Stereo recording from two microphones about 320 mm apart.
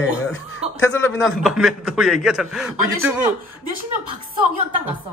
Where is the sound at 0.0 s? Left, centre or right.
Left.